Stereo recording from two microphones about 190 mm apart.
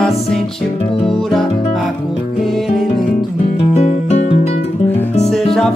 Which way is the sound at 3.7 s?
35° left (ahead or behind).